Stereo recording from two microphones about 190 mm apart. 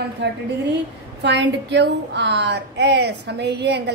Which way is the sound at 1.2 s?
65° right (ahead or behind).